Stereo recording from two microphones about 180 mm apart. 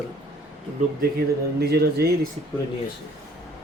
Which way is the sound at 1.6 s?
60° right (ahead or behind).